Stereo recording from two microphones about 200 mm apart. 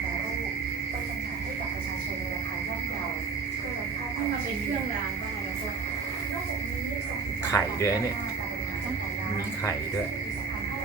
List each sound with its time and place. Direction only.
7.5 s speech: 15° left (ahead or behind)